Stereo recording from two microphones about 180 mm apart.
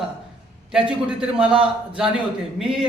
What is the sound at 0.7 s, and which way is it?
A man's voice, 5° right (ahead or behind).